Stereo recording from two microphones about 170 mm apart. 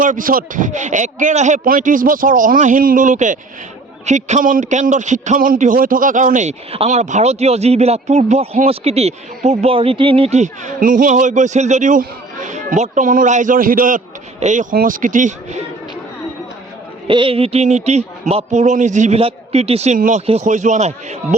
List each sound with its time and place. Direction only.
0.0 s a man's voice: 50° right (ahead or behind)
17.1 s speech: 30° right (ahead or behind)
20.0 s a man's voice: 50° right (ahead or behind)